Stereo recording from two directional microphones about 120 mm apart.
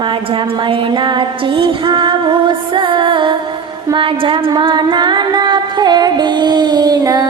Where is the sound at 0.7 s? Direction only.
40° right (ahead or behind).